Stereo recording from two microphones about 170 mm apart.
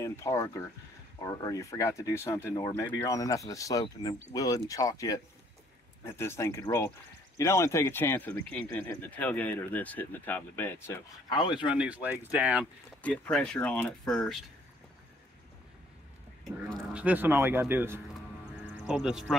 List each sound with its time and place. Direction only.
0.0 s speech: 15° left (ahead or behind)
11.2 s speech: 25° left (ahead or behind)
11.7 s speech: 5° right (ahead or behind)
13.0 s speech: 5° left (ahead or behind)
16.9 s speech: 10° right (ahead or behind)
19.0 s speech: 5° right (ahead or behind)